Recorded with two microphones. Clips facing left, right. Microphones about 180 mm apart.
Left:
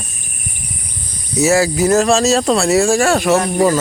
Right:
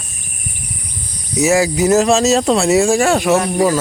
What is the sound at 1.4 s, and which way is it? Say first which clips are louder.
Speech: even; 15° right (ahead or behind).